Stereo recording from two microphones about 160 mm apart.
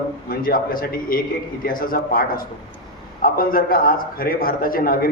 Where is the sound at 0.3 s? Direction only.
65° left (ahead or behind).